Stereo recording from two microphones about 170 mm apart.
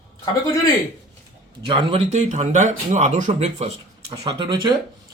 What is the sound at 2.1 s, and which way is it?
Speech, 45° right (ahead or behind).